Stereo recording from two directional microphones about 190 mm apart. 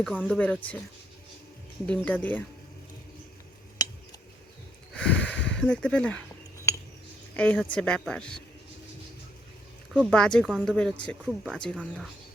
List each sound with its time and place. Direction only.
0.2 s speech: 5° left (ahead or behind)
1.9 s speech: 5° left (ahead or behind)
3.8 s scissors: 20° left (ahead or behind)
4.9 s a sound: 5° left (ahead or behind)
5.5 s speech: 5° left (ahead or behind)
7.3 s speech: 5° left (ahead or behind)
9.9 s speech: centre (ahead or behind)